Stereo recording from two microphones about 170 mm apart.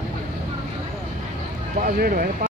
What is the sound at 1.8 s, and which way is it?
Speech, 60° right (ahead or behind).